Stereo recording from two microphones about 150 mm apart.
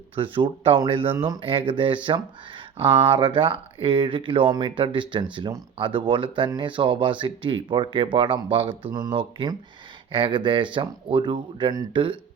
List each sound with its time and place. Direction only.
0.2 s speech: 35° right (ahead or behind)
8.9 s speech: 25° right (ahead or behind)